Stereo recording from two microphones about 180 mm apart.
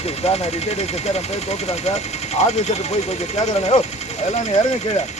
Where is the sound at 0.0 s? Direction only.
35° left (ahead or behind).